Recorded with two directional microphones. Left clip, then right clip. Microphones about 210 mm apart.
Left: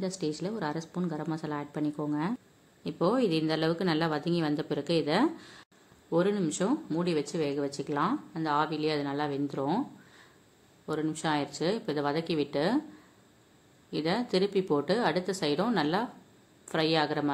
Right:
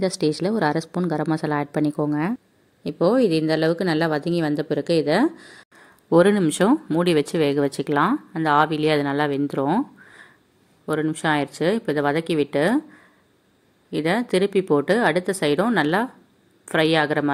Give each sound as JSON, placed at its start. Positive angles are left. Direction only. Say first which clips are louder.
{"t": 0.0, "sound": "speech", "louder": "right 11 dB", "side_deg": -40}
{"t": 6.0, "sound": "speech", "louder": "right 11 dB", "side_deg": -45}
{"t": 13.8, "sound": "speech", "louder": "right 8 dB", "side_deg": -25}